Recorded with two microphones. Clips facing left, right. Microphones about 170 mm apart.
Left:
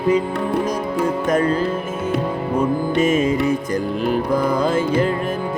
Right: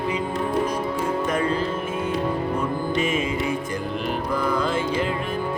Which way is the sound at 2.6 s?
40° left (ahead or behind).